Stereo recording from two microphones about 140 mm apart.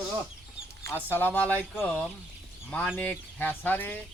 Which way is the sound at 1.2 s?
10° left (ahead or behind).